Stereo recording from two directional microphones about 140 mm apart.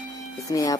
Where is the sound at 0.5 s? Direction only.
25° left (ahead or behind).